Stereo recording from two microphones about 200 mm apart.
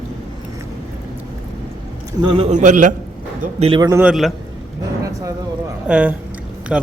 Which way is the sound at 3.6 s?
25° right (ahead or behind).